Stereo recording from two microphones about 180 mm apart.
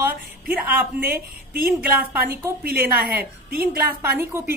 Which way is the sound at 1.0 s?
55° right (ahead or behind).